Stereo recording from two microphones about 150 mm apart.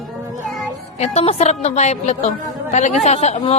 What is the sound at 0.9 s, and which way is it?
A woman's voice, 45° left (ahead or behind).